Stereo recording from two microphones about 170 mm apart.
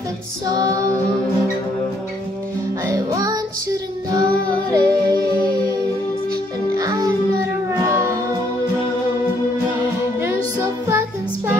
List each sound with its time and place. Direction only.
0.5 s female singing: 20° right (ahead or behind)
2.9 s music: 20° right (ahead or behind)
6.7 s music: 20° right (ahead or behind)
10.2 s music: 15° right (ahead or behind)